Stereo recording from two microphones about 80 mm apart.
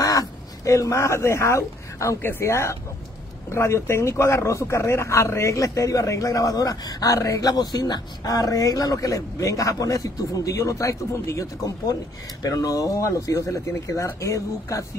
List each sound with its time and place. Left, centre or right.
0.0 s speech: left
7.5 s speech: left